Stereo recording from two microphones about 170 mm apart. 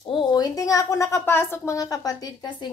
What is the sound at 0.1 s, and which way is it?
A woman's voice, 25° left (ahead or behind).